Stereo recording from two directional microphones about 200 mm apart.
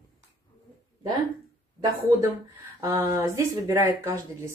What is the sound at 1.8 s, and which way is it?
Speech, 20° right (ahead or behind).